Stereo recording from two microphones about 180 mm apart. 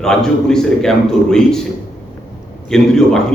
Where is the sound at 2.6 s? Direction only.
5° left (ahead or behind).